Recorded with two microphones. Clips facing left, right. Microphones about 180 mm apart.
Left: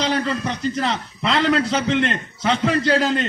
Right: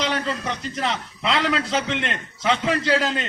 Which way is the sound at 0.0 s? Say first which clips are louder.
Left 3 dB; 35° left (ahead or behind).